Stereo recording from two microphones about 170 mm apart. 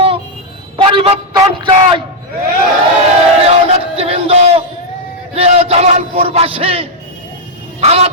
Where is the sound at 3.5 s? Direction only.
35° right (ahead or behind).